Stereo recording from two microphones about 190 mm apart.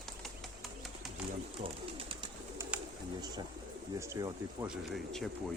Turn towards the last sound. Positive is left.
turn(degrees=0)  # may be behind; listen again after turning